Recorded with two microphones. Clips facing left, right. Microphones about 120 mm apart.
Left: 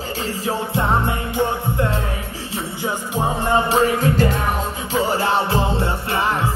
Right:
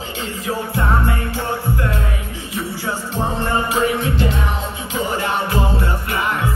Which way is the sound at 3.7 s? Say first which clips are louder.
Left 2 dB; 40° left (ahead or behind).